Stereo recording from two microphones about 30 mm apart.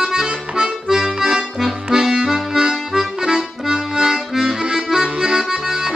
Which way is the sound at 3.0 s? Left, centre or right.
Centre.